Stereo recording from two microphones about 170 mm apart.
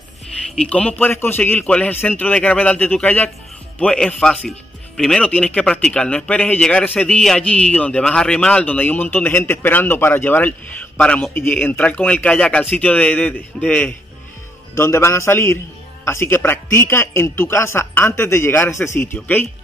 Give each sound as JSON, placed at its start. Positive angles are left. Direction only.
{"t": 0.6, "sound": "speech", "side_deg": 5}